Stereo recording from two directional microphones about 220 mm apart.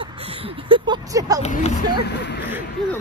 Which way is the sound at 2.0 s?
50° left (ahead or behind).